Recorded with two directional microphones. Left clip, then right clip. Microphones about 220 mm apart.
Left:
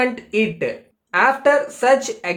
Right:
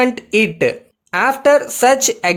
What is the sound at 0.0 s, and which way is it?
Speech, 50° right (ahead or behind).